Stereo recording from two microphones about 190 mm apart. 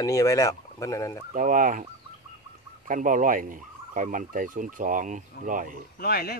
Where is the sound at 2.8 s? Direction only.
45° right (ahead or behind).